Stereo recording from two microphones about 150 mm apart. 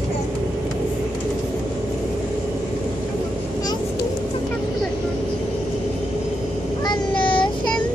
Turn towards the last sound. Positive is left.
turn(degrees=30)  # may be behind; listen again after turning